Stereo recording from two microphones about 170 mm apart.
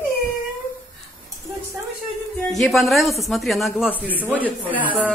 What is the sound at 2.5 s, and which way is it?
A man's voice, centre (ahead or behind).